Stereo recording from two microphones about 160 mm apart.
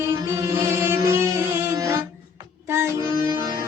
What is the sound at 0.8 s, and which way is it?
Music, 15° right (ahead or behind).